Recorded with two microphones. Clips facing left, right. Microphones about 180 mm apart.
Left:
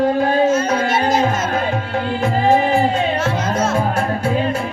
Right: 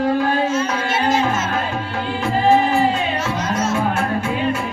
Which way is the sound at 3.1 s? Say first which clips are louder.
Left 3 dB; 55° left (ahead or behind).